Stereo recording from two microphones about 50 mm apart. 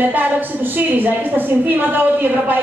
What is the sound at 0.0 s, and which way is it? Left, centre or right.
A woman's voice, right.